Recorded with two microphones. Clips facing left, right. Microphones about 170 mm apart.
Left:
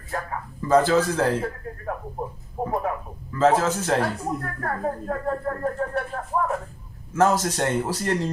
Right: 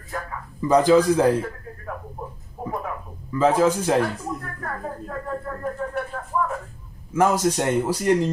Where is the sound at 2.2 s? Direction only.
30° left (ahead or behind).